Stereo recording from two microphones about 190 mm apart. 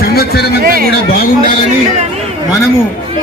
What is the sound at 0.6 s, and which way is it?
Speech, 50° right (ahead or behind).